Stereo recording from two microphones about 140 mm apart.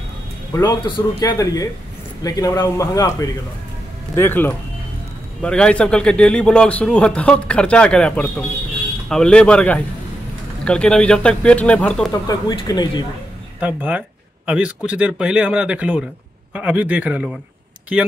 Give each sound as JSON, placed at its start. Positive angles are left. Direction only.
{"t": 0.5, "sound": "a man's voice", "side_deg": 25}
{"t": 12.1, "sound": "a woman's voice", "side_deg": 25}
{"t": 13.6, "sound": "speech", "side_deg": -10}